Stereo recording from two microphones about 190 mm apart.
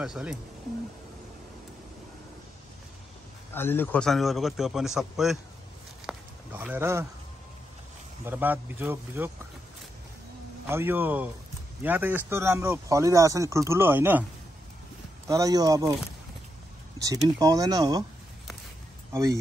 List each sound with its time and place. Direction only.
0.0 s a man's voice: 5° right (ahead or behind)
3.5 s a man's voice: 10° left (ahead or behind)
6.0 s a sound: 10° right (ahead or behind)
8.3 s speech: 10° right (ahead or behind)
10.7 s speech: 10° right (ahead or behind)
15.2 s speech: 15° right (ahead or behind)
17.0 s speech: 20° right (ahead or behind)